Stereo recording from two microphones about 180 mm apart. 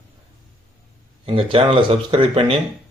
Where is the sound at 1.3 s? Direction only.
30° right (ahead or behind).